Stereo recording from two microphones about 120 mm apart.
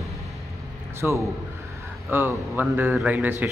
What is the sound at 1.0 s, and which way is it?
A man's voice, 10° right (ahead or behind).